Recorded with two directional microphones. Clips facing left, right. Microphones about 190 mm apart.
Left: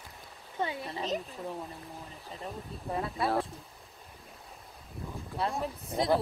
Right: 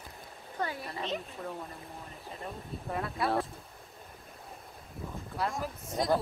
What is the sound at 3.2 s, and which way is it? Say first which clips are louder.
Speech: even; centre (ahead or behind).